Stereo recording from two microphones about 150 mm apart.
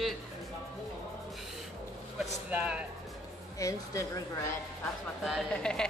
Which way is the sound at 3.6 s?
20° left (ahead or behind).